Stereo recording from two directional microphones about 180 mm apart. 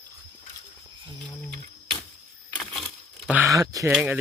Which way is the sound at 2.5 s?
5° left (ahead or behind).